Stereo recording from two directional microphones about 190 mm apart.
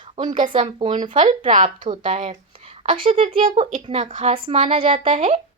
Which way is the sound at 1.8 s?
25° right (ahead or behind).